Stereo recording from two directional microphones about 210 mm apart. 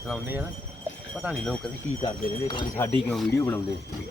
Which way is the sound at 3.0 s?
Centre (ahead or behind).